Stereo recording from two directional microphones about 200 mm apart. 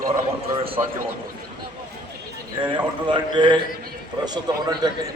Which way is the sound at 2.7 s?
25° right (ahead or behind).